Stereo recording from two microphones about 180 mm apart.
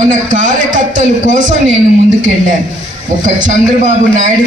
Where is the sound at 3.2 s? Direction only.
45° right (ahead or behind).